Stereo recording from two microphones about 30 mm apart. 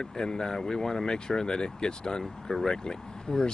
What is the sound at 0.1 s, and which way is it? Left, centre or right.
Speech, left.